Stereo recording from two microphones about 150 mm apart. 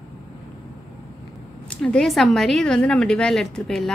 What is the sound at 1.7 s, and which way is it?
A woman's voice, 5° left (ahead or behind).